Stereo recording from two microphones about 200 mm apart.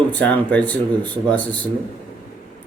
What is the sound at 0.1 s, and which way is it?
Speech, 10° left (ahead or behind).